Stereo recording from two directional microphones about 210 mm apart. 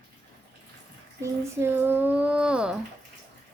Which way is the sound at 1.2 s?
10° right (ahead or behind).